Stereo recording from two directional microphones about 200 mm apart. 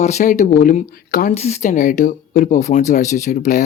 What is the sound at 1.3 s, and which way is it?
Speech, 35° left (ahead or behind).